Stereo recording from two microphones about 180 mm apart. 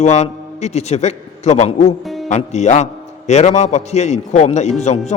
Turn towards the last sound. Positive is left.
turn(degrees=40)  # may be behind; listen again after turning